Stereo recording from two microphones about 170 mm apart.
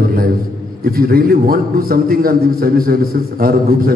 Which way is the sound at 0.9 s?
60° right (ahead or behind).